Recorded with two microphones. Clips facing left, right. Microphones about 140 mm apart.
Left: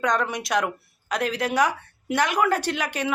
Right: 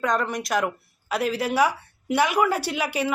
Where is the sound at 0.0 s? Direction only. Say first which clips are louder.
Even; 5° right (ahead or behind).